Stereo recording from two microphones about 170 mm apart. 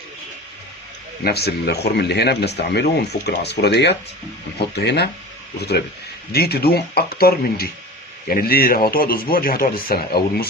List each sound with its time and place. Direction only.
1.2 s speech: 70° left (ahead or behind)
6.3 s speech: 65° left (ahead or behind)